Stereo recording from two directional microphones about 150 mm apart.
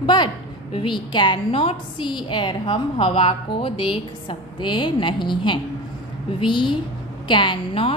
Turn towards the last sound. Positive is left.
turn(degrees=35)  # may be behind; listen again after turning